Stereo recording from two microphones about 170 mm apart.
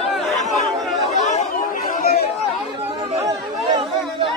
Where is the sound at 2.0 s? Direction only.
70° left (ahead or behind).